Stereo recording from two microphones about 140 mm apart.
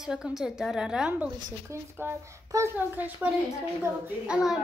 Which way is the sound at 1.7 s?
20° right (ahead or behind).